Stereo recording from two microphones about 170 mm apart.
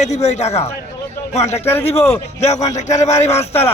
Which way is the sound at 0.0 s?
40° left (ahead or behind).